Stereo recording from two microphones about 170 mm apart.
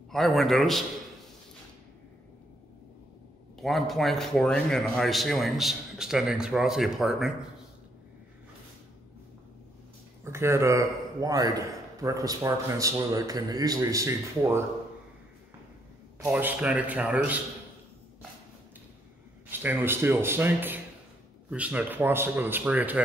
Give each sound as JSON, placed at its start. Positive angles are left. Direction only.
{"t": 0.1, "sound": "a man's voice", "side_deg": 0}
{"t": 3.5, "sound": "a man's voice", "side_deg": 0}
{"t": 10.2, "sound": "a man's voice", "side_deg": -15}
{"t": 16.2, "sound": "speech", "side_deg": -10}
{"t": 19.5, "sound": "speech", "side_deg": -10}